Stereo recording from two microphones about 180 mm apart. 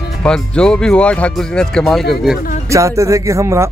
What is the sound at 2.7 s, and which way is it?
Speech, 15° right (ahead or behind).